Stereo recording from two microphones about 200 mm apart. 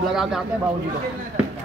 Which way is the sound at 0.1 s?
Centre (ahead or behind).